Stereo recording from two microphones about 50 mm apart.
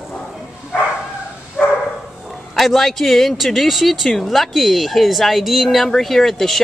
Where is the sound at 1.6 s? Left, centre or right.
Left.